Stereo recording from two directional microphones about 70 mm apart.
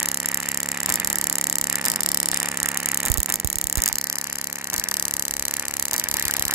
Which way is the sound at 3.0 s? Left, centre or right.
Centre.